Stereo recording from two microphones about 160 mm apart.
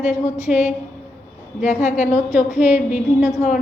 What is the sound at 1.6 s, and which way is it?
Speech, 50° left (ahead or behind).